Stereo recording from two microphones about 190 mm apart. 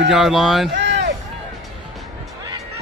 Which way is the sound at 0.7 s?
65° right (ahead or behind).